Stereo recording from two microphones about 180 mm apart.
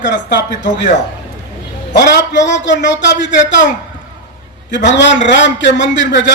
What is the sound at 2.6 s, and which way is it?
Speech, 90° left.